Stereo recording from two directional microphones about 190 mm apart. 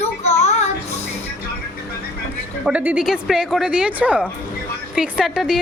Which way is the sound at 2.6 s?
5° right (ahead or behind).